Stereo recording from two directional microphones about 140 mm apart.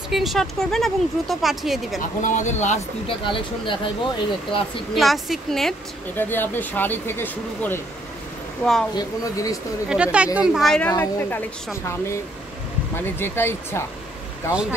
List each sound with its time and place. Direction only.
0.1 s a woman's voice: centre (ahead or behind)
2.0 s speech: 65° left (ahead or behind)
3.3 s speech: 35° left (ahead or behind)
4.9 s a woman's voice: centre (ahead or behind)
6.1 s speech: 15° left (ahead or behind)
8.9 s speech: 25° left (ahead or behind)
9.8 s a woman's voice: 10° right (ahead or behind); by 13.8 s 15° left (ahead or behind)